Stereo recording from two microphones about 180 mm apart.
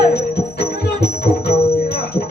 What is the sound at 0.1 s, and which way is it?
Music, 65° left (ahead or behind).